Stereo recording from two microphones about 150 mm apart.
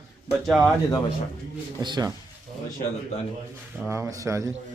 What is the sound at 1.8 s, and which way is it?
Speech, 30° right (ahead or behind).